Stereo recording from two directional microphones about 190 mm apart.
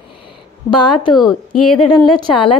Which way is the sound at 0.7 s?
25° left (ahead or behind).